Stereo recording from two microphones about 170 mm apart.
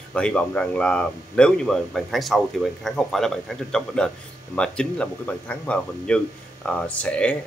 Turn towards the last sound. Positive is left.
turn(degrees=5)  # may be behind; listen again after turning